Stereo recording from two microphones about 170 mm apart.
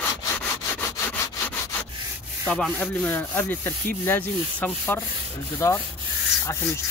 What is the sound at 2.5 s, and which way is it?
Rub, 5° left (ahead or behind).